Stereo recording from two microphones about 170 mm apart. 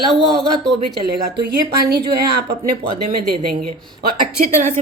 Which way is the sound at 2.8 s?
35° right (ahead or behind).